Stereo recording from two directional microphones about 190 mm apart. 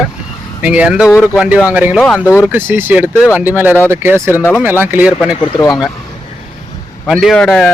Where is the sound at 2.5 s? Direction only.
10° right (ahead or behind).